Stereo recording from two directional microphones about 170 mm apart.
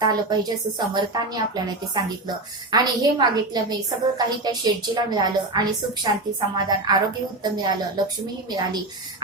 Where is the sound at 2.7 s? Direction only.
25° right (ahead or behind).